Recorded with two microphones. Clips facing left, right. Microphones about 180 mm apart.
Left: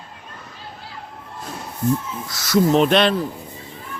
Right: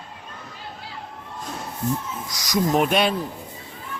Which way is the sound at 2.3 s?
15° right (ahead or behind).